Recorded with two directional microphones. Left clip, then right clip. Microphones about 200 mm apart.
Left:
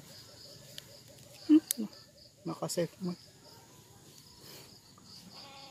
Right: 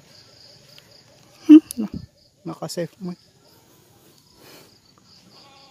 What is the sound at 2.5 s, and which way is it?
Speech, 55° right (ahead or behind).